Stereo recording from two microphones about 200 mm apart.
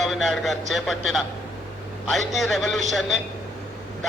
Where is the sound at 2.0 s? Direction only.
Centre (ahead or behind).